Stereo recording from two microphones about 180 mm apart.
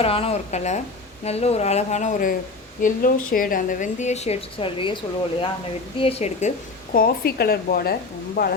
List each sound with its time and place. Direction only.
0.0 s a woman's voice: 35° left (ahead or behind)
6.0 s a woman's voice: 35° left (ahead or behind)
6.9 s speech: 55° left (ahead or behind)